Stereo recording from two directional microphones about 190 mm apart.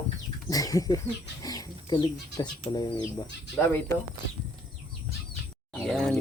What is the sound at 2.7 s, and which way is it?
Speech, 25° left (ahead or behind).